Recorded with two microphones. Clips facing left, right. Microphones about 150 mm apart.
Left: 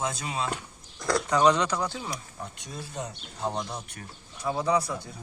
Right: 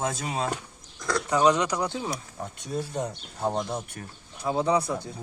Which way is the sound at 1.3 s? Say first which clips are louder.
Right 1 dB; 10° right (ahead or behind).